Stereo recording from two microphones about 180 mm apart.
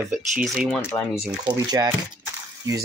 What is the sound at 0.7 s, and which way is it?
Speech, 10° left (ahead or behind).